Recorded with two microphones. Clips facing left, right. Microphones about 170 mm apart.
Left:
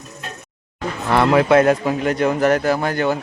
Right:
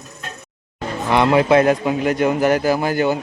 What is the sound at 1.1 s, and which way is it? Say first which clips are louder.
A man's voice: even; centre (ahead or behind).